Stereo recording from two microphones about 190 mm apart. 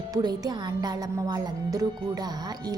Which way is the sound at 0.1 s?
20° right (ahead or behind).